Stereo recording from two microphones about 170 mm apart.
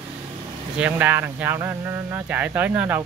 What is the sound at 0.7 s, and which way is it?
Speech, 10° right (ahead or behind).